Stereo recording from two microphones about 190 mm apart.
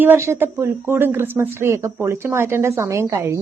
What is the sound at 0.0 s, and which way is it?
A woman's voice, 10° right (ahead or behind).